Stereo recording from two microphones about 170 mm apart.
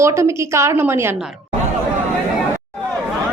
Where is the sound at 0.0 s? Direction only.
15° right (ahead or behind).